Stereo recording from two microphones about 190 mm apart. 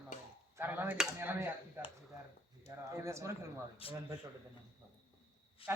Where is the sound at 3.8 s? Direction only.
30° left (ahead or behind).